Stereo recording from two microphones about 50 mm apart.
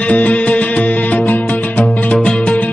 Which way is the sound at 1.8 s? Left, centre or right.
Left.